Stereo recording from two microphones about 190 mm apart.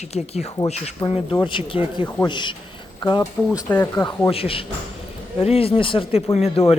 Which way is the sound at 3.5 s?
10° left (ahead or behind).